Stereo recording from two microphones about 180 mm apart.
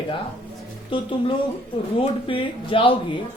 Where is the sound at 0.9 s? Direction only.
30° left (ahead or behind).